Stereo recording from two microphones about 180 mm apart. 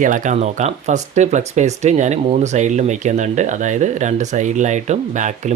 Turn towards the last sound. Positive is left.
turn(degrees=-40)  # may be behind; listen again after turning